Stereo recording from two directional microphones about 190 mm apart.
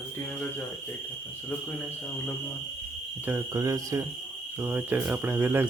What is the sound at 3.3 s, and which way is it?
Speech, 15° right (ahead or behind).